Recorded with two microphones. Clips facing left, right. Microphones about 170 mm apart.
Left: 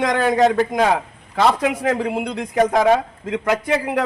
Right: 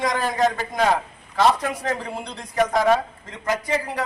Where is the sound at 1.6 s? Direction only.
80° left.